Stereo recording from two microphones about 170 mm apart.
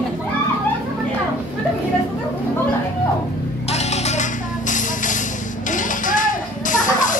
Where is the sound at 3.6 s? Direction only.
40° left (ahead or behind).